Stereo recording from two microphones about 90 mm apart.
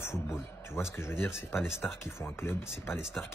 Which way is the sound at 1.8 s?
10° left (ahead or behind).